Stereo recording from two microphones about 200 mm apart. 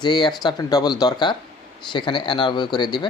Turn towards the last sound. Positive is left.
turn(degrees=20)  # may be behind; listen again after turning